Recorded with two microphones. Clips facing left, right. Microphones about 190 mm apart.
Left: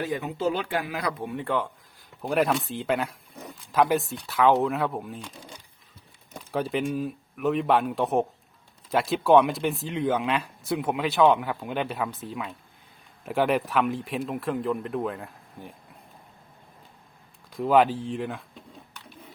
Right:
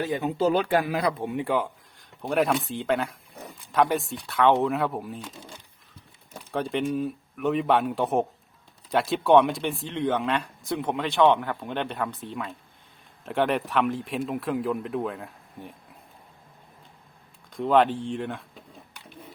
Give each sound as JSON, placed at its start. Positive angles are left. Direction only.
{"t": 0.0, "sound": "speech", "side_deg": -25}
{"t": 0.9, "sound": "speech", "side_deg": -25}
{"t": 1.5, "sound": "speech", "side_deg": -5}
{"t": 6.5, "sound": "speech", "side_deg": 5}
{"t": 17.5, "sound": "speech", "side_deg": 5}